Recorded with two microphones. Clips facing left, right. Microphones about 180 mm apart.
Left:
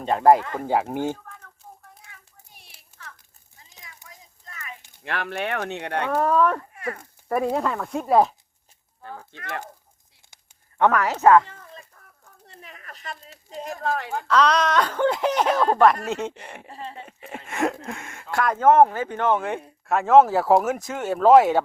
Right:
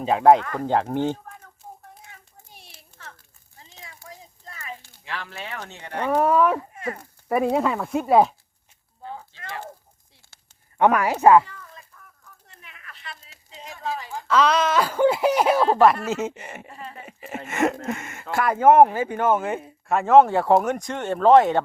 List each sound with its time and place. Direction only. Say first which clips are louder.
0.0 s speech: right 1 dB; centre (ahead or behind)
1.1 s a sound: right 3 dB; 25° right (ahead or behind)
3.8 s a sound: right 6 dB; 30° right (ahead or behind)
5.0 s speech: left 7 dB; 60° left (ahead or behind)
6.1 s a woman's voice: right 2 dB; 10° right (ahead or behind)
6.7 s a sound: right 1 dB; 25° right (ahead or behind)
7.5 s speech: right 3 dB; 5° right (ahead or behind)
10.8 s a woman's voice: right 1 dB; 10° right (ahead or behind)
11.4 s a sound: left 1 dB; 30° left (ahead or behind); by 14.3 s 60° left (ahead or behind)
14.3 s a woman's voice: even; 5° right (ahead or behind)
16.6 s speech: left 2 dB; 30° left (ahead or behind)
17.0 s speech: right 3 dB; 5° right (ahead or behind)